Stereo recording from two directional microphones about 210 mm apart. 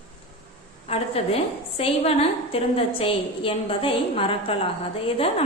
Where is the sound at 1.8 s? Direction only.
25° left (ahead or behind).